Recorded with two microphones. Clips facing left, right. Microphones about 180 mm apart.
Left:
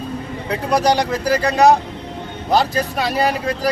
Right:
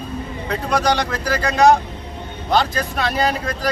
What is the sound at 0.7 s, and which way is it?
Speech, 35° left (ahead or behind).